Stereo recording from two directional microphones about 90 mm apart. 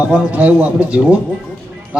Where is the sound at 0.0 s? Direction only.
15° right (ahead or behind).